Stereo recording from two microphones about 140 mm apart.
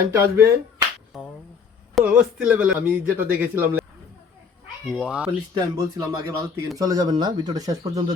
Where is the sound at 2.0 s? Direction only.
10° right (ahead or behind).